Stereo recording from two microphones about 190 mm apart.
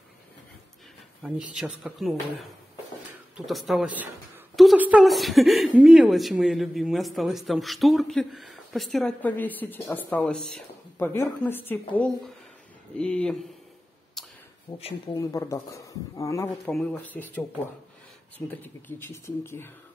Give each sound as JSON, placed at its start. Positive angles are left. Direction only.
{"t": 1.5, "sound": "a woman's voice", "side_deg": -5}
{"t": 3.3, "sound": "a woman's voice", "side_deg": 0}
{"t": 14.2, "sound": "a sound", "side_deg": 0}
{"t": 14.7, "sound": "speech", "side_deg": 30}
{"t": 15.1, "sound": "speech", "side_deg": 15}
{"t": 18.5, "sound": "speech", "side_deg": 10}